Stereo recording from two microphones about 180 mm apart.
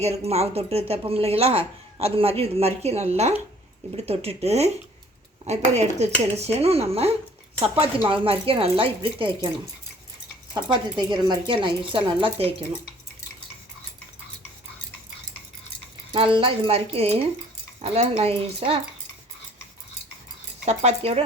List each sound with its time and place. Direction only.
0.0 s speech: 35° right (ahead or behind)
10.5 s speech: 25° right (ahead or behind)
16.1 s speech: 30° right (ahead or behind)
20.7 s speech: 35° right (ahead or behind)